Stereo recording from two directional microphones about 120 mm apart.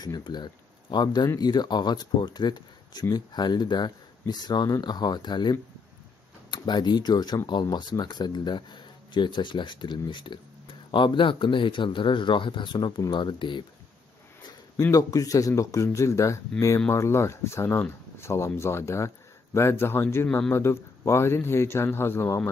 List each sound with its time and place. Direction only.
0.0 s speech: 35° left (ahead or behind)
14.9 s speech: 30° left (ahead or behind)